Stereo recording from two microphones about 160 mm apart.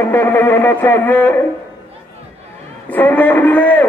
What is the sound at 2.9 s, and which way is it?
Speech, 10° left (ahead or behind).